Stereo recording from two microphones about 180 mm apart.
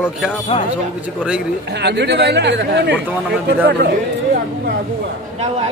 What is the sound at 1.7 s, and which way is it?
Speech, 70° right (ahead or behind).